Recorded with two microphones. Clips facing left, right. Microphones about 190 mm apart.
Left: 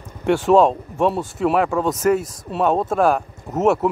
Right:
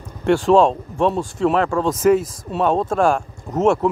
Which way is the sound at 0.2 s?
5° left (ahead or behind).